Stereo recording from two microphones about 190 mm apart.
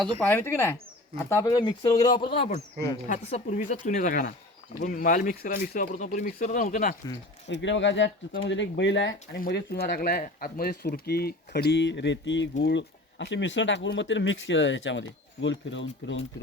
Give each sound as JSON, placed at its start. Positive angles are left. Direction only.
{"t": 0.0, "sound": "speech", "side_deg": 5}
{"t": 7.4, "sound": "speech", "side_deg": 70}
{"t": 9.4, "sound": "speech", "side_deg": 60}